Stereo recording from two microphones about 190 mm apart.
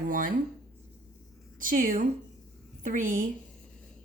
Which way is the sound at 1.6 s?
45° right (ahead or behind).